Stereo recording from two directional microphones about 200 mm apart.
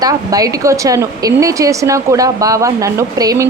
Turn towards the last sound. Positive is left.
turn(degrees=-15)  # may be behind; listen again after turning